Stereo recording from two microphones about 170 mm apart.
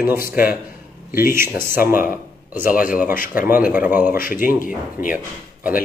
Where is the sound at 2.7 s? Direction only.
55° left (ahead or behind).